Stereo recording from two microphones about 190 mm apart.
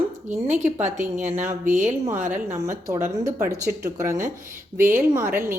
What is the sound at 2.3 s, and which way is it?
Speech, 15° right (ahead or behind).